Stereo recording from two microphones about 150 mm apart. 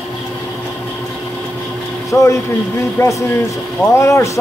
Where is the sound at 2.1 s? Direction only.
20° left (ahead or behind).